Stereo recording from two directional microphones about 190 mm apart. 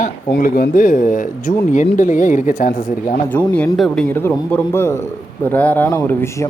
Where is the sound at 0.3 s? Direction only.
50° left (ahead or behind).